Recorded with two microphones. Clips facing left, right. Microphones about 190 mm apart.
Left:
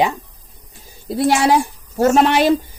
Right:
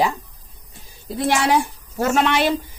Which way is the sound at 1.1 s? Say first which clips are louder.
Left 4 dB; 35° left (ahead or behind).